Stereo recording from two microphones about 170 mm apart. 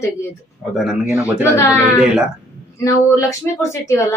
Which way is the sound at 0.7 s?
5° right (ahead or behind).